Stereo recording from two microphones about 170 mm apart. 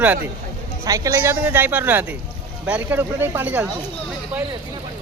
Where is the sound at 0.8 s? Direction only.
20° right (ahead or behind).